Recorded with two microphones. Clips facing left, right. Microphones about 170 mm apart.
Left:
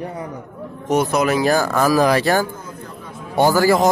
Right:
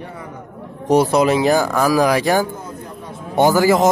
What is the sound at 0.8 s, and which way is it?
Speech, 30° right (ahead or behind).